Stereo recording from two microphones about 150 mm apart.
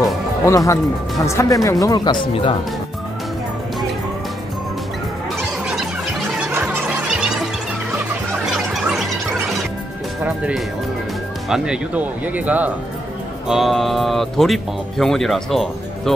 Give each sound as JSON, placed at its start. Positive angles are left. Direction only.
{"t": 0.0, "sound": "music", "side_deg": 20}
{"t": 1.2, "sound": "speech", "side_deg": 20}
{"t": 5.7, "sound": "music", "side_deg": -5}
{"t": 8.5, "sound": "a sound", "side_deg": 0}
{"t": 10.2, "sound": "speech", "side_deg": -10}